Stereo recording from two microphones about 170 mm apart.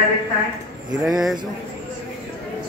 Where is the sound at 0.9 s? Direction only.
Centre (ahead or behind).